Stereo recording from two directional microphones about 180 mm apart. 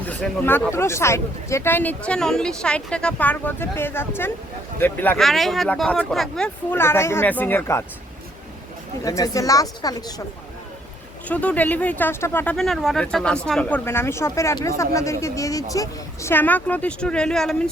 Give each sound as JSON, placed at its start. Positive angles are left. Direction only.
{"t": 0.0, "sound": "speech", "side_deg": 10}
{"t": 9.0, "sound": "speech", "side_deg": 20}
{"t": 11.3, "sound": "speech", "side_deg": 10}